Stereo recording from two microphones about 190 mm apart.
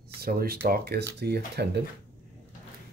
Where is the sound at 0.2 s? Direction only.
50° right (ahead or behind).